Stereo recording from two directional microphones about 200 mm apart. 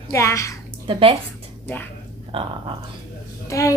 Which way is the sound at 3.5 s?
15° left (ahead or behind).